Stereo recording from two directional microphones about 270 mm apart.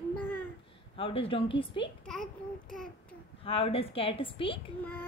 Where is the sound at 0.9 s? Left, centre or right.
Centre.